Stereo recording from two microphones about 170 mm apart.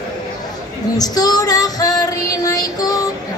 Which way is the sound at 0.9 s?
20° left (ahead or behind).